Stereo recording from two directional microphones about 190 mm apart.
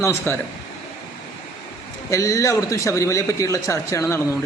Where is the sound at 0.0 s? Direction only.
15° left (ahead or behind).